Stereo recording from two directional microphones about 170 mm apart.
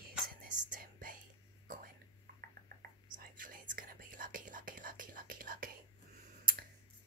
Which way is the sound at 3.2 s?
50° right (ahead or behind).